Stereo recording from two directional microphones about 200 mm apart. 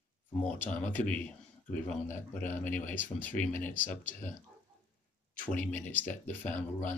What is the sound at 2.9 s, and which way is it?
Speech, 10° left (ahead or behind).